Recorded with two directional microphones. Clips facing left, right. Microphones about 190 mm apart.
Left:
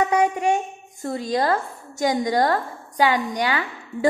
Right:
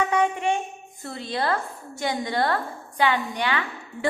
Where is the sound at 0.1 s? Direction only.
40° left (ahead or behind).